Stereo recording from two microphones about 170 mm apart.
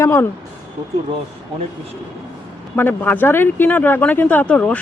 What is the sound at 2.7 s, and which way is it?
Speech, 10° left (ahead or behind).